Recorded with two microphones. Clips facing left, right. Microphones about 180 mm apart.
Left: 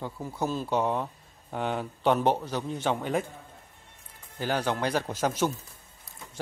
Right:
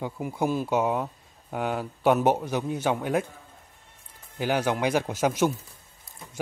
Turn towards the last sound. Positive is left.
turn(degrees=-10)  # may be behind; listen again after turning